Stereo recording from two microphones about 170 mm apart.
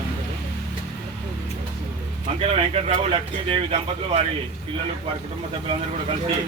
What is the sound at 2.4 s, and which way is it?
Speech, 35° right (ahead or behind).